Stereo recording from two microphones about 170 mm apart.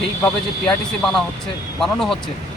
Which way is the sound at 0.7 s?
Centre (ahead or behind).